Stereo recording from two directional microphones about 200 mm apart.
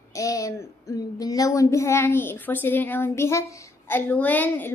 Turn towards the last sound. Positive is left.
turn(degrees=10)  # may be behind; listen again after turning